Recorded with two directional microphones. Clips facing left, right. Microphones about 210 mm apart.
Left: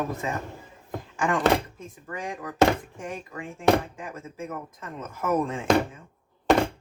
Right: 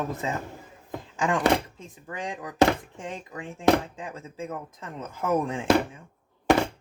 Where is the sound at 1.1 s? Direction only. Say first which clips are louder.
Even; 20° right (ahead or behind).